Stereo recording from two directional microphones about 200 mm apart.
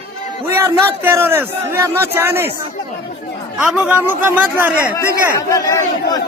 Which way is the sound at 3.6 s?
5° right (ahead or behind).